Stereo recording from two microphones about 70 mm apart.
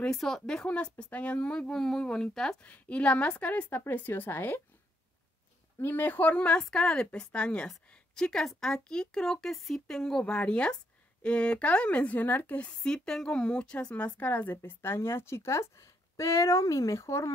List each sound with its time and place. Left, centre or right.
0.0 s speech: centre
2.6 s a woman's voice: centre
5.8 s a woman's voice: left